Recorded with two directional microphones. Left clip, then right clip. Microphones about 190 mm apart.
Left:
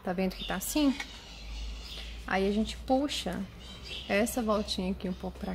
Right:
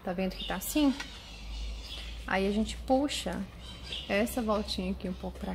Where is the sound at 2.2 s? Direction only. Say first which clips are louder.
Left 1 dB; 5° left (ahead or behind).